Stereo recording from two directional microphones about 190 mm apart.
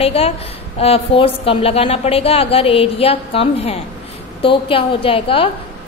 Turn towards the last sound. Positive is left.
turn(degrees=30)  # may be behind; listen again after turning